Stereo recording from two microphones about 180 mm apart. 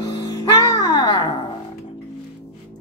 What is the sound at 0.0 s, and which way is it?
Music, 20° left (ahead or behind).